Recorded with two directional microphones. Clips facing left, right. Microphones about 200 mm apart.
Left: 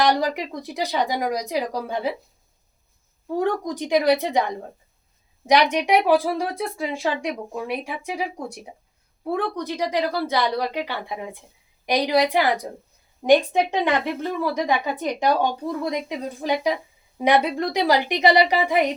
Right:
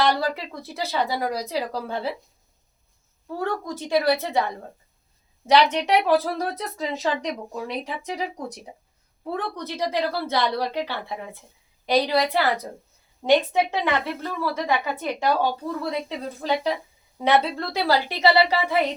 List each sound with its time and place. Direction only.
0.0 s a woman's voice: 15° left (ahead or behind)
3.2 s a woman's voice: 15° left (ahead or behind)
5.7 s a woman's voice: 10° left (ahead or behind)